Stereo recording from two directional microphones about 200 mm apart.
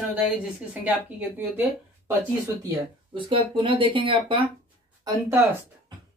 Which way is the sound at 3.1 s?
25° right (ahead or behind).